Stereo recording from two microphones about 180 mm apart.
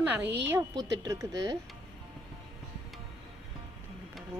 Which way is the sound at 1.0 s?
15° right (ahead or behind).